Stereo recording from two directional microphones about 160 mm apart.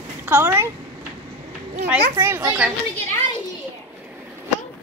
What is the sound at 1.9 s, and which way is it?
Speech, 15° right (ahead or behind).